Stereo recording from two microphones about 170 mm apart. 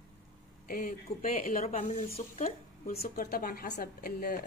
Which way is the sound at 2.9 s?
60° left (ahead or behind).